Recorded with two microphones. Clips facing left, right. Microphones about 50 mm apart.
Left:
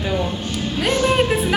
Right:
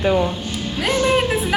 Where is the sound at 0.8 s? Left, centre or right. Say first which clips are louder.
Even; centre.